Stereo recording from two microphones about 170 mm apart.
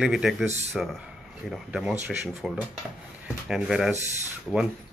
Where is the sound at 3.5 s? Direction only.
5° right (ahead or behind).